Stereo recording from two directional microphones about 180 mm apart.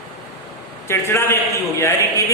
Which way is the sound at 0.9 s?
15° left (ahead or behind).